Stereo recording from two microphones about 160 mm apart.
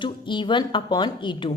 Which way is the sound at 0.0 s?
30° left (ahead or behind).